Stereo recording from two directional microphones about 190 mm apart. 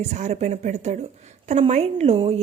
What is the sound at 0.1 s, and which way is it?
A woman's voice, 35° right (ahead or behind).